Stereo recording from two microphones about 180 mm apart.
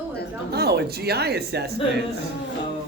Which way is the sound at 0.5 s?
65° right (ahead or behind).